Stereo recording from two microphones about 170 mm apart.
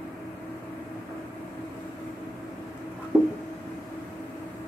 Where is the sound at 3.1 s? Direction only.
Centre (ahead or behind).